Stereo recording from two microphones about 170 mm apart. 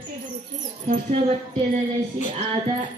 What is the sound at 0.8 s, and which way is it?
Speech, 35° right (ahead or behind).